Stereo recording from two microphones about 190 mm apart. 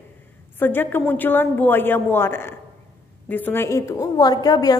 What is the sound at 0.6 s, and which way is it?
A woman's voice, 10° left (ahead or behind).